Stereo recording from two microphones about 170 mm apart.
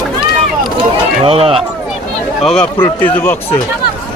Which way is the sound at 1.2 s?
35° right (ahead or behind).